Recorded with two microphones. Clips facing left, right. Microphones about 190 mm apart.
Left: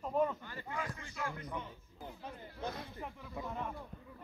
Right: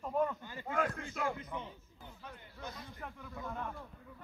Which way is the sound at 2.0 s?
35° left (ahead or behind).